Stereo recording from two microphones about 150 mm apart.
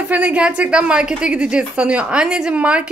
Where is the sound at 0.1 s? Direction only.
10° right (ahead or behind).